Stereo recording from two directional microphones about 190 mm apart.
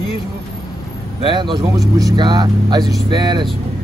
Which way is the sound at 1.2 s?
25° right (ahead or behind).